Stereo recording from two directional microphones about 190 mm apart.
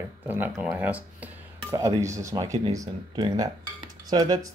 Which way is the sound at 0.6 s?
5° right (ahead or behind).